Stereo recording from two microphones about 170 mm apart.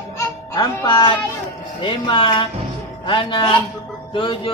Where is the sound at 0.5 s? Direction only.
25° left (ahead or behind).